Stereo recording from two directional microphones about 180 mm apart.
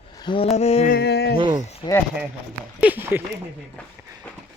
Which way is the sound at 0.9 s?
65° left (ahead or behind).